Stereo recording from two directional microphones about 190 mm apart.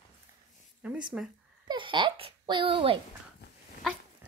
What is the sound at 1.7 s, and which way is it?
A child's voice, 25° right (ahead or behind).